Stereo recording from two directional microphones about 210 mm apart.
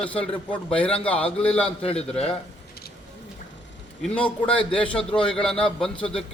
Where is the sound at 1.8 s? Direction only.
30° left (ahead or behind).